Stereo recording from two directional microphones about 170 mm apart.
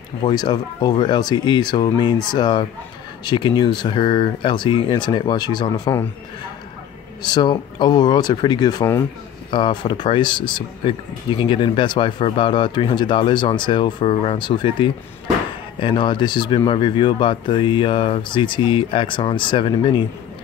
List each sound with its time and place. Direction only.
0.2 s speech: 25° left (ahead or behind)
7.2 s speech: 25° left (ahead or behind)